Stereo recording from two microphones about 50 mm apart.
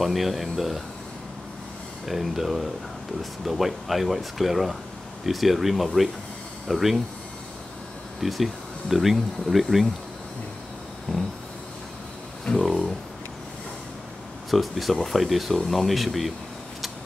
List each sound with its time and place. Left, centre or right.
0.0 s speech: centre
2.0 s speech: centre
8.2 s speech: centre
11.1 s a sound: centre
12.5 s a sound: centre
14.5 s speech: centre